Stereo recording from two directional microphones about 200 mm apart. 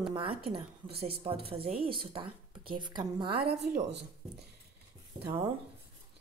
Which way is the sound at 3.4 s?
55° right (ahead or behind).